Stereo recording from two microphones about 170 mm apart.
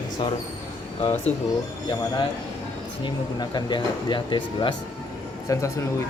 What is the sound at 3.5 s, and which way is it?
Speech, 25° left (ahead or behind).